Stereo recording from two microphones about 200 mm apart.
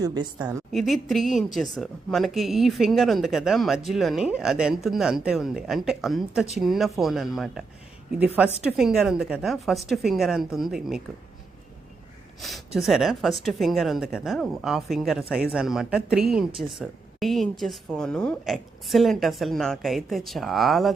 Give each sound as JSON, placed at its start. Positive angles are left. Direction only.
{"t": 0.0, "sound": "a woman's voice", "side_deg": -20}
{"t": 0.3, "sound": "speech", "side_deg": -5}
{"t": 12.4, "sound": "speech", "side_deg": 0}
{"t": 16.5, "sound": "a woman's voice", "side_deg": -25}
{"t": 16.8, "sound": "speech", "side_deg": 0}